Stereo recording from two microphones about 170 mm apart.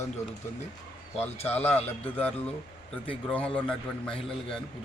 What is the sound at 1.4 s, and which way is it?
Speech, 40° left (ahead or behind).